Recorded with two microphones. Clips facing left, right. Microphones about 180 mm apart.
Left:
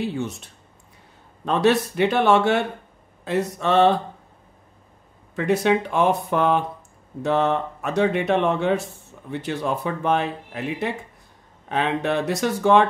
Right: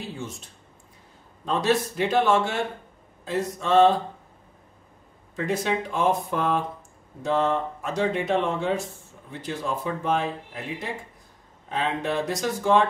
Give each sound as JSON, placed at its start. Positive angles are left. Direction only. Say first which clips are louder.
{"t": 0.0, "sound": "speech", "louder": "left 8 dB", "side_deg": 65}
{"t": 5.3, "sound": "speech", "louder": "left 6 dB", "side_deg": 65}